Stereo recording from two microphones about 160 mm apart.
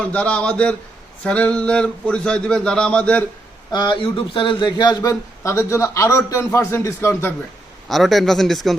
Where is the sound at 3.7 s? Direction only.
30° left (ahead or behind).